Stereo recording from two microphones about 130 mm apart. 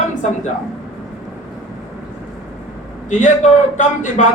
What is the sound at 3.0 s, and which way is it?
A man's voice, 70° left (ahead or behind).